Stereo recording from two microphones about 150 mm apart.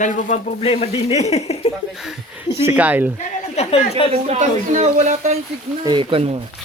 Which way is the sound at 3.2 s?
45° left (ahead or behind).